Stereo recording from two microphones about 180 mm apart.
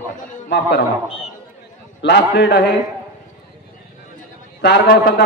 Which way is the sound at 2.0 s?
70° left (ahead or behind).